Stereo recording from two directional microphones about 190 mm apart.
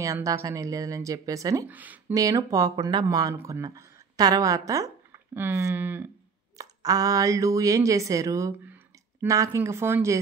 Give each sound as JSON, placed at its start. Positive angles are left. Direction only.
{"t": 0.0, "sound": "speech", "side_deg": -15}